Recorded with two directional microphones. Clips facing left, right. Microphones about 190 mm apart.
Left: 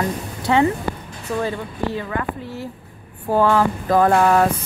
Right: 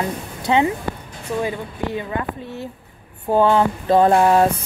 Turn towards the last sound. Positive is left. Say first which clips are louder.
# right 1 dB
turn(degrees=-25)  # may be behind; listen again after turning